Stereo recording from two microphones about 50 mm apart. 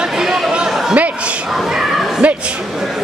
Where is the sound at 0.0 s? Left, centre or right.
Centre.